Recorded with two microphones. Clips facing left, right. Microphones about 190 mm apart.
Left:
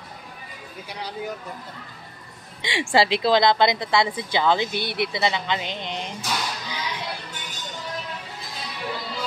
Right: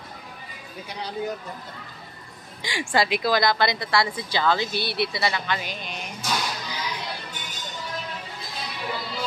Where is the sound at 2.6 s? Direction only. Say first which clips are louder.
Left 3 dB; 25° left (ahead or behind).